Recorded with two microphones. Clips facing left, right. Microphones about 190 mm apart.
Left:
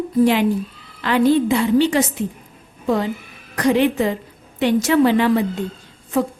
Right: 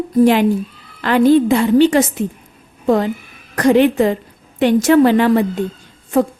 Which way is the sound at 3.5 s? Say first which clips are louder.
Right 5 dB; 50° right (ahead or behind).